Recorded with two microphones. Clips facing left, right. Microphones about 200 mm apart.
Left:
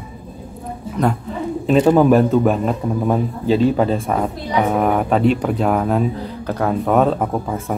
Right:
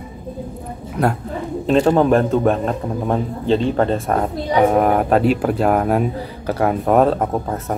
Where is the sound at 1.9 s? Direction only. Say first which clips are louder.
Left 2 dB; 5° left (ahead or behind).